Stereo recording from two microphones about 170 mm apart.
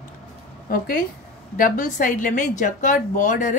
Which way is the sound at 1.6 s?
50° left (ahead or behind).